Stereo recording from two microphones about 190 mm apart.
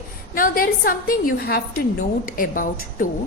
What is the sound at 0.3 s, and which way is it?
A woman's voice, 50° left (ahead or behind).